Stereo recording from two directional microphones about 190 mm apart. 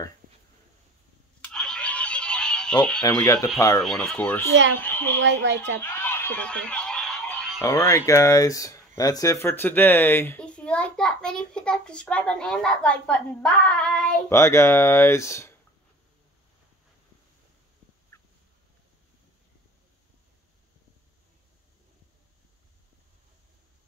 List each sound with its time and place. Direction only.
1.4 s a sound: 5° left (ahead or behind)
3.0 s speech: 20° left (ahead or behind)
3.8 s speech: centre (ahead or behind)
5.2 s speech: 70° right (ahead or behind)
5.8 s a sound: 10° left (ahead or behind)
7.6 s speech: 15° left (ahead or behind)
18.1 s fowl: 15° left (ahead or behind)